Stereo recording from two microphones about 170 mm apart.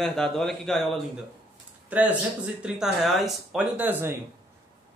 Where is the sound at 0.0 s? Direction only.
5° left (ahead or behind).